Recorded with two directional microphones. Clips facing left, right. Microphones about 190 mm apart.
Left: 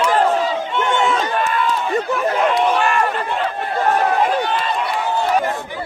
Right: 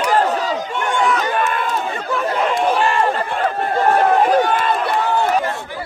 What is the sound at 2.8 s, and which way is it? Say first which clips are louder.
Chatter: right 1 dB; 30° right (ahead or behind).